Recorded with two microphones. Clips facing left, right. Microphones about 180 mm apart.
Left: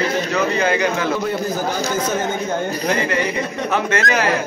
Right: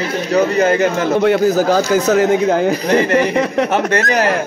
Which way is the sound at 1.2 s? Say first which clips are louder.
Right 9 dB; 85° right.